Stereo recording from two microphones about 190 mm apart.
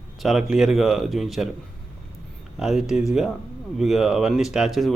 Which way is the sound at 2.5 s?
Centre (ahead or behind).